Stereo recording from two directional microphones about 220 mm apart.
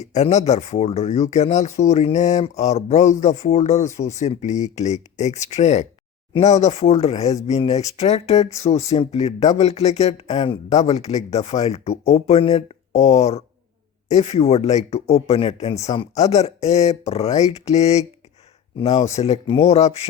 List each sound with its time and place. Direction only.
0.0 s speech: 30° left (ahead or behind)